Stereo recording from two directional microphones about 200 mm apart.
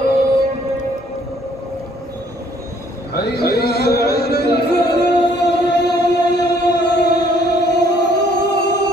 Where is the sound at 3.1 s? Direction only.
55° left (ahead or behind).